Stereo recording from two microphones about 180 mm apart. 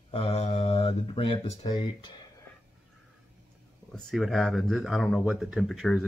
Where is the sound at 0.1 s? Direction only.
35° left (ahead or behind).